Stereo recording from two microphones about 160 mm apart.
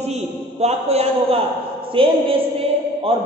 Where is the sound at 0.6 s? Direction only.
40° right (ahead or behind).